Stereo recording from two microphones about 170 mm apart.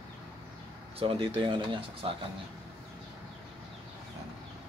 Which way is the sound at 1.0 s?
30° right (ahead or behind).